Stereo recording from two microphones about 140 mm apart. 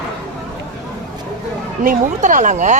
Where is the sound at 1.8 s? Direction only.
65° right (ahead or behind).